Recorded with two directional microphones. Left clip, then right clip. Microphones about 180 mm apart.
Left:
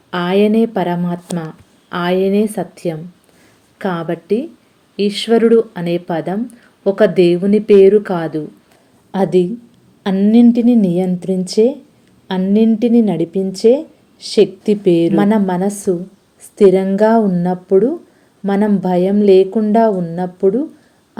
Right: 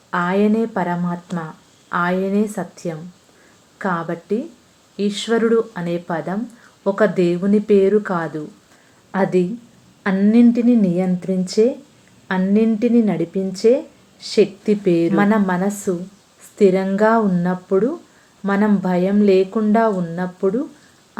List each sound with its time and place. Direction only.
0.1 s speech: 25° left (ahead or behind)
3.8 s a woman's voice: 25° left (ahead or behind)